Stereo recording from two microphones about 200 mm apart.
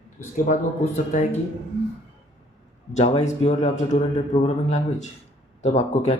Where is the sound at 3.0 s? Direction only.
35° left (ahead or behind).